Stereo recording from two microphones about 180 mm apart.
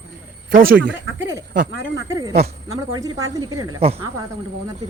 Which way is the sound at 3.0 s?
20° right (ahead or behind).